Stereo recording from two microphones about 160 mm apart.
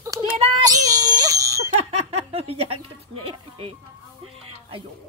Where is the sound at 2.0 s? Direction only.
40° right (ahead or behind).